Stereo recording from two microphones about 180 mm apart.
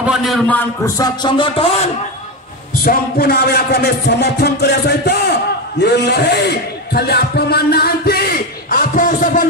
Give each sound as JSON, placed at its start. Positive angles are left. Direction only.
{"t": 0.0, "sound": "a man's voice", "side_deg": -5}
{"t": 0.9, "sound": "music", "side_deg": 25}
{"t": 2.8, "sound": "music", "side_deg": 55}
{"t": 5.8, "sound": "a man's voice", "side_deg": 70}